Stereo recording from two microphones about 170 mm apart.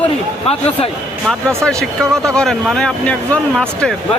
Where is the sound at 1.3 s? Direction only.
5° left (ahead or behind).